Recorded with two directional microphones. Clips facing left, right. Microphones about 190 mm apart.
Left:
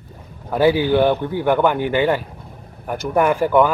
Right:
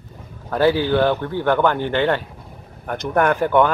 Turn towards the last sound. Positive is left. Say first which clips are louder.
# left 1 dB
turn(degrees=5)  # may be behind; listen again after turning